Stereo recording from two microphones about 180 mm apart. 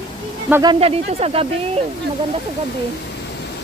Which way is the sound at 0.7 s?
35° right (ahead or behind).